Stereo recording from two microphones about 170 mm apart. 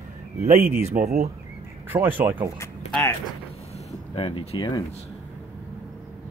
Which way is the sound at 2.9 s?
10° left (ahead or behind).